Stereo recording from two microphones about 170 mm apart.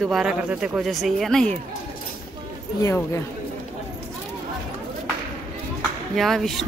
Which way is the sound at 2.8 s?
15° left (ahead or behind).